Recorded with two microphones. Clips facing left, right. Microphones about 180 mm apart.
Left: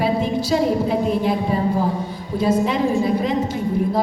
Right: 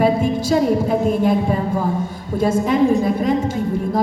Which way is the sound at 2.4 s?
50° right (ahead or behind).